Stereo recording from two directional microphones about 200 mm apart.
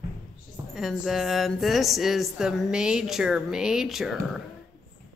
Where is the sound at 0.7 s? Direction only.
Centre (ahead or behind).